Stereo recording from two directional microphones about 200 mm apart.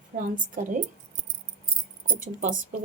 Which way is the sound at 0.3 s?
40° right (ahead or behind).